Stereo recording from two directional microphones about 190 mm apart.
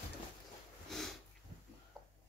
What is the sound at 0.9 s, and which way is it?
Sniff, centre (ahead or behind).